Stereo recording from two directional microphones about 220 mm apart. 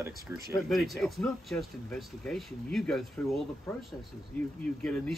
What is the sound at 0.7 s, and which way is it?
Speech, centre (ahead or behind).